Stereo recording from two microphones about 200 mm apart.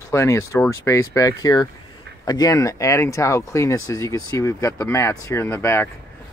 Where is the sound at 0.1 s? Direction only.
15° left (ahead or behind).